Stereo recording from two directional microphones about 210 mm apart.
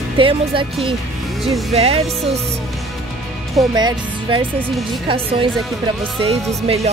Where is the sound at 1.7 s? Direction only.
30° right (ahead or behind).